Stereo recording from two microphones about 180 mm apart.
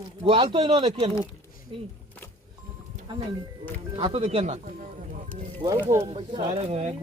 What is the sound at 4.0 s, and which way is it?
Speech, 25° right (ahead or behind).